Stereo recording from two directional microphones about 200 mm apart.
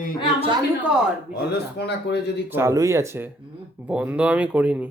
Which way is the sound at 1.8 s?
55° left (ahead or behind).